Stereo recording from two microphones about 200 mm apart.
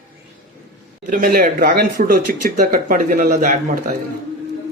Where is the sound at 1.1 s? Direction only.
45° right (ahead or behind).